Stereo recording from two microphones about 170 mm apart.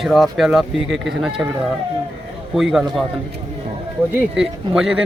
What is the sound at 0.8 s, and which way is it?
Speech, 90° right.